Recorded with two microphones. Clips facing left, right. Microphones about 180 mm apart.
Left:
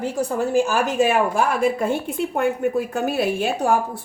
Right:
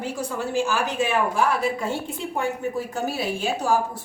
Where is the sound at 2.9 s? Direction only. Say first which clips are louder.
Left 5 dB; 60° left (ahead or behind).